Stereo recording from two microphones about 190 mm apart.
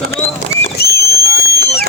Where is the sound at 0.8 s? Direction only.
55° left (ahead or behind).